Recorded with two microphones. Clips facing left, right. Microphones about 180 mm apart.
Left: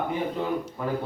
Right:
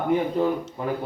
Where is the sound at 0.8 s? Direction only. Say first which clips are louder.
Right 4 dB; 20° right (ahead or behind).